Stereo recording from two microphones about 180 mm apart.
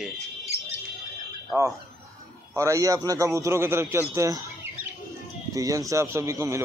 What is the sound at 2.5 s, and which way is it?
A man's voice, 15° right (ahead or behind).